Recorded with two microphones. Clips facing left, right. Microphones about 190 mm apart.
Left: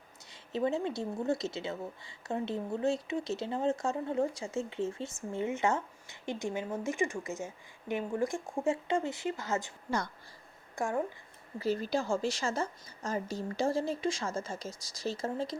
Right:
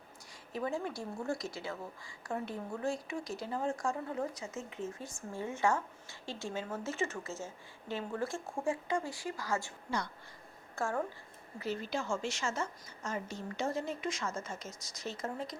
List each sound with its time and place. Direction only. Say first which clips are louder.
0.5 s a woman's voice: left 5 dB; 25° left (ahead or behind)
10.8 s speech: left 3 dB; 15° left (ahead or behind)
11.6 s a woman's voice: left 5 dB; 35° left (ahead or behind)